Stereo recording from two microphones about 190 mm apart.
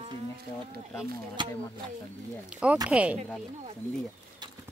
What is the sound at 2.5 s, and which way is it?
Speech, 5° right (ahead or behind).